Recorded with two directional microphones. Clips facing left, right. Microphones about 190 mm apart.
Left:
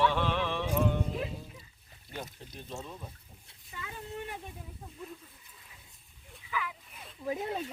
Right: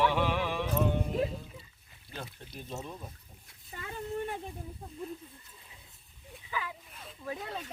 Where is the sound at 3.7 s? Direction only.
45° right (ahead or behind).